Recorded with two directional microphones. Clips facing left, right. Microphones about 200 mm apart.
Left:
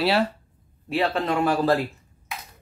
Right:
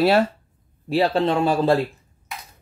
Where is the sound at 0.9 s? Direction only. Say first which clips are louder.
Right 4 dB; 30° right (ahead or behind).